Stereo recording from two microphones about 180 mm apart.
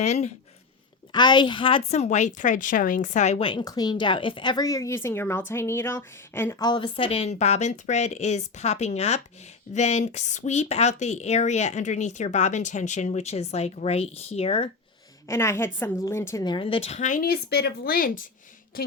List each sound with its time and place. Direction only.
0.0 s speech: 40° left (ahead or behind)
1.1 s a woman's voice: 25° left (ahead or behind)
15.3 s a woman's voice: 15° left (ahead or behind); by 17.3 s 45° left (ahead or behind)
17.5 s speech: 60° left (ahead or behind)